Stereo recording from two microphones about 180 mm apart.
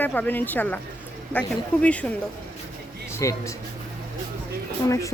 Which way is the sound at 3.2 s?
15° left (ahead or behind).